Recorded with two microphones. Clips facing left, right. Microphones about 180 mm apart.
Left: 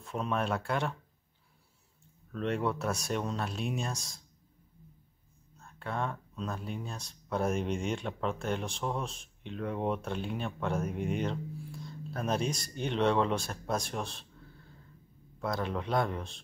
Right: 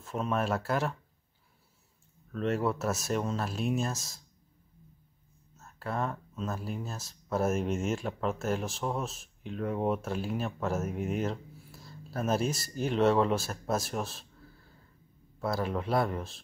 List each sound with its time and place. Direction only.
0.0 s speech: centre (ahead or behind)
2.3 s speech: centre (ahead or behind)
5.6 s speech: 5° right (ahead or behind)
15.3 s speech: 5° right (ahead or behind)